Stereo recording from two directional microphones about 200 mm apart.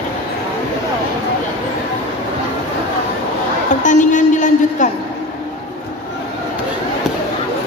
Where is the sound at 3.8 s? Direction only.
40° left (ahead or behind).